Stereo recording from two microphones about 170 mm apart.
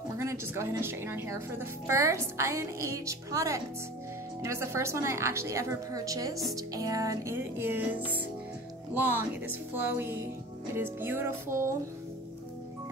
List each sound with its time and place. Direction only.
0.2 s a woman's voice: 15° right (ahead or behind)